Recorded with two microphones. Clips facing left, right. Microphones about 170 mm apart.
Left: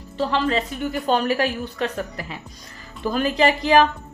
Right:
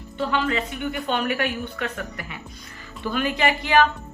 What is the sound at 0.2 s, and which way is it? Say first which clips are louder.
Speech: left 2 dB; 35° left (ahead or behind).